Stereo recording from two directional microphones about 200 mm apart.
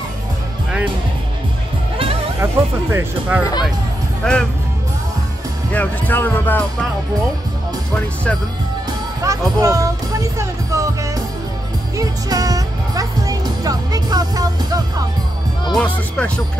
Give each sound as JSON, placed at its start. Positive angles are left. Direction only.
{"t": 2.4, "sound": "speech", "side_deg": -10}
{"t": 4.2, "sound": "speech", "side_deg": 5}
{"t": 5.7, "sound": "speech", "side_deg": 10}
{"t": 9.2, "sound": "speech", "side_deg": -15}
{"t": 12.0, "sound": "music", "side_deg": -20}
{"t": 15.8, "sound": "speech", "side_deg": 5}